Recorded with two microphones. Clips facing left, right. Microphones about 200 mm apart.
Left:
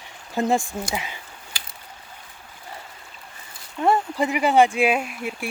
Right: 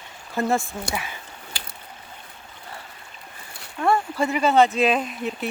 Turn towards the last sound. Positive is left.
turn(degrees=10)  # may be behind; listen again after turning